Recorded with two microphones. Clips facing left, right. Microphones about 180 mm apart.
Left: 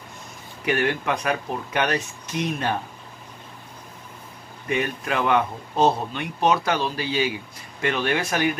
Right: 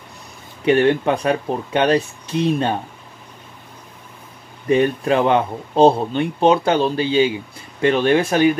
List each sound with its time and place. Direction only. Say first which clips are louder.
0.7 s speech: right 8 dB; 30° right (ahead or behind)
4.6 s speech: right 9 dB; 30° right (ahead or behind)